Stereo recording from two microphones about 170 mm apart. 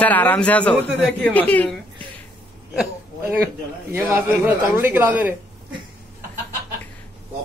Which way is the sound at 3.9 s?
10° right (ahead or behind).